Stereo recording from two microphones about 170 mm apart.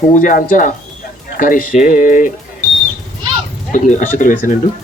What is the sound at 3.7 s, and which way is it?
Speech, 45° left (ahead or behind).